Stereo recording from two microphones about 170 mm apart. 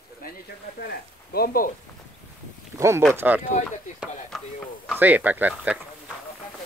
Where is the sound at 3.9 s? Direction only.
5° left (ahead or behind).